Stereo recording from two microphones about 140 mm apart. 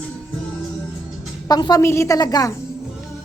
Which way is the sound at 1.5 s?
30° left (ahead or behind).